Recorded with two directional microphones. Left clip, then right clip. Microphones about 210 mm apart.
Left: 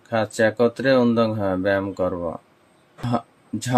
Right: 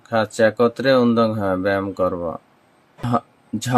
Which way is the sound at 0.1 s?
15° right (ahead or behind).